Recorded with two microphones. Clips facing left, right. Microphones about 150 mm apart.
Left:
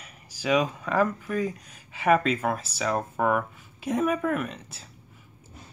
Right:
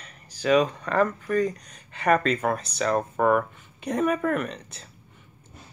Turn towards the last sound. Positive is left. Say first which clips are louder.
# right 2 dB
turn(degrees=5)  # may be behind; listen again after turning